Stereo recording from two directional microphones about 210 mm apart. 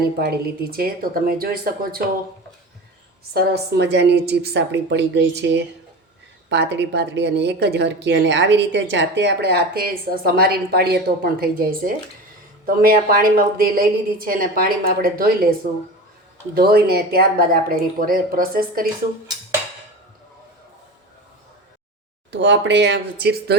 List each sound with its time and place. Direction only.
0.2 s a woman's voice: 45° right (ahead or behind)
3.3 s a woman's voice: 50° right (ahead or behind)
16.6 s a woman's voice: 50° right (ahead or behind)
22.3 s a woman's voice: 60° right (ahead or behind)